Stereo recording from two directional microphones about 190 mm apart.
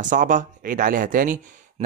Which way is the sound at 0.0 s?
40° right (ahead or behind).